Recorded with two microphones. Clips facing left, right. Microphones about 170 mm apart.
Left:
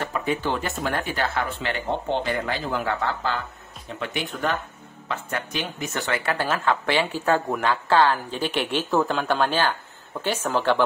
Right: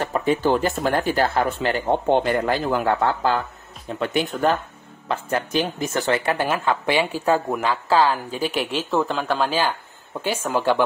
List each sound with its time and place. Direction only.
0.1 s speech: 30° right (ahead or behind)
2.0 s speech: 55° right (ahead or behind)
4.0 s speech: 35° right (ahead or behind)
6.2 s speech: 15° right (ahead or behind)